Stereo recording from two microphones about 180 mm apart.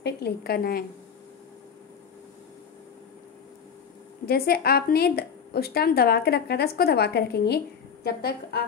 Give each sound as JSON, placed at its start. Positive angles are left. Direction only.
{"t": 0.0, "sound": "speech", "side_deg": 60}
{"t": 4.3, "sound": "speech", "side_deg": 60}